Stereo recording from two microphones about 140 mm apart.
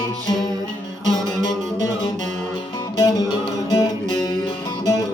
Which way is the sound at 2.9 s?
30° left (ahead or behind).